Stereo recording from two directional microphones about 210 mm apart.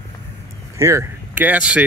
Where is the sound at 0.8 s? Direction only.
15° right (ahead or behind).